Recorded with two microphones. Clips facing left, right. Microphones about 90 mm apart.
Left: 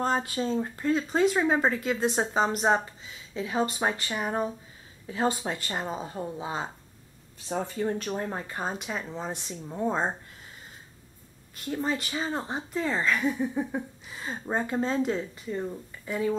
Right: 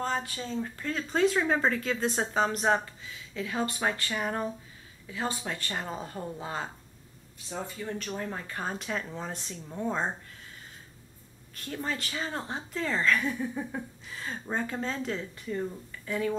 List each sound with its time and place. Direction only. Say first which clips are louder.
0.0 s speech: left 5 dB; 30° left (ahead or behind)
5.0 s speech: left 6 dB; 35° left (ahead or behind)
5.5 s speech: left 3 dB; 15° left (ahead or behind)
7.4 s speech: left 7 dB; 45° left (ahead or behind)
8.0 s speech: left 4 dB; 30° left (ahead or behind)
11.5 s speech: left 5 dB; 15° left (ahead or behind)